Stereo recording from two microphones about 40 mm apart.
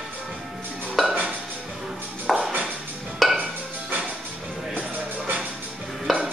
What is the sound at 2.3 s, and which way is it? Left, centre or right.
Music, centre.